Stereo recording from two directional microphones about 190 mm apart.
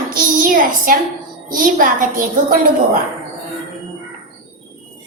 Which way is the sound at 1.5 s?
45° right (ahead or behind).